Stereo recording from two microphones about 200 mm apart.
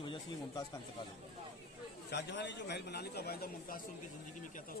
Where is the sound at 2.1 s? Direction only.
60° left (ahead or behind).